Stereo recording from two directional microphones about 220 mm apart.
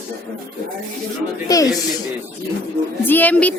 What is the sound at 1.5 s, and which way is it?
Speech, 15° left (ahead or behind).